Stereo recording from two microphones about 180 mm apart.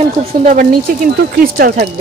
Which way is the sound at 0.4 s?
45° right (ahead or behind).